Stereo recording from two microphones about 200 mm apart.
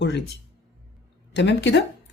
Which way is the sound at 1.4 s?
60° left (ahead or behind).